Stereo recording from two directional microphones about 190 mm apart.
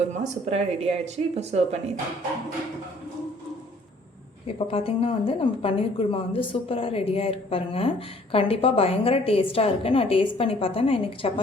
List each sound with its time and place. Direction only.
0.1 s speech: 35° right (ahead or behind)
4.4 s a woman's voice: 30° left (ahead or behind)